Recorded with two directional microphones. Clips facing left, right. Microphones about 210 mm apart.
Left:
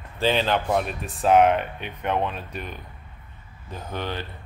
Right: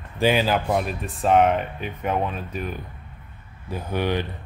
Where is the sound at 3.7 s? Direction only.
15° right (ahead or behind).